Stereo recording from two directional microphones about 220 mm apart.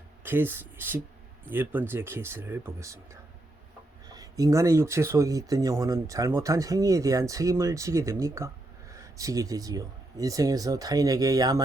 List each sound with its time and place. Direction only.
0.2 s speech: 10° right (ahead or behind)